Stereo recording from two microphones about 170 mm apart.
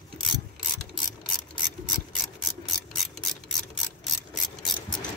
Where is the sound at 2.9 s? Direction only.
Centre (ahead or behind).